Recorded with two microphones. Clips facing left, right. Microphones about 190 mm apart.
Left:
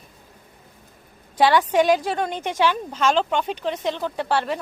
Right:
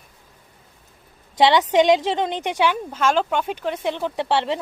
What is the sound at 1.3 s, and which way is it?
A woman's voice, 20° right (ahead or behind).